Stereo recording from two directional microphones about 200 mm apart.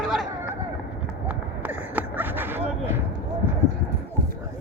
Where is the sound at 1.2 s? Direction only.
10° right (ahead or behind).